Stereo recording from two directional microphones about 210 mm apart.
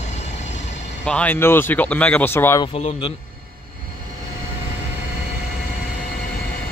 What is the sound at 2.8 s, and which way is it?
Speech, 30° left (ahead or behind).